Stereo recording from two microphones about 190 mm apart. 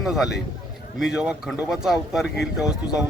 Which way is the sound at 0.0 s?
Centre (ahead or behind).